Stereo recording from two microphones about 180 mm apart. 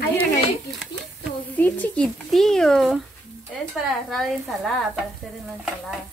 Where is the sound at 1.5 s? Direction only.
10° left (ahead or behind).